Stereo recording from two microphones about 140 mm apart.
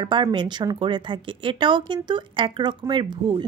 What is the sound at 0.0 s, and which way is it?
Speech, 35° right (ahead or behind).